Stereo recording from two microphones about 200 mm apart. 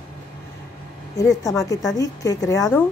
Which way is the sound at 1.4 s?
15° left (ahead or behind).